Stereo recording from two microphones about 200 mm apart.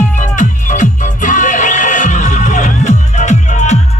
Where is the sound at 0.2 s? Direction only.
40° left (ahead or behind).